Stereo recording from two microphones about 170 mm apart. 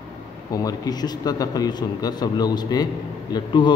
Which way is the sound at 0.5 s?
20° left (ahead or behind).